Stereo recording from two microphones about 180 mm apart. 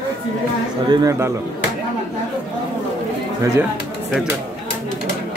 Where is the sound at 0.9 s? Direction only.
20° right (ahead or behind).